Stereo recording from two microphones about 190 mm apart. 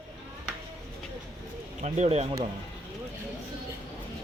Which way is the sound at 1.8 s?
35° right (ahead or behind).